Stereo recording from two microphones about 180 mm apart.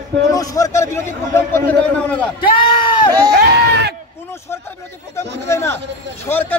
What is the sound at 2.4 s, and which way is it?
Speech, 25° left (ahead or behind).